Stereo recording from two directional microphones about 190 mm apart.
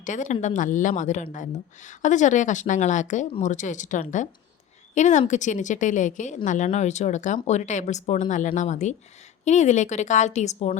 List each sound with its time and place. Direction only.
0.0 s speech: 40° left (ahead or behind)